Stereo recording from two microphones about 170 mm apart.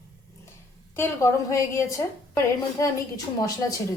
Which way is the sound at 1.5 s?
15° left (ahead or behind).